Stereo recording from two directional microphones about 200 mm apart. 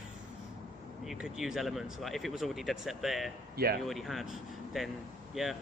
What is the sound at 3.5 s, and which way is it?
Speech, 50° right (ahead or behind).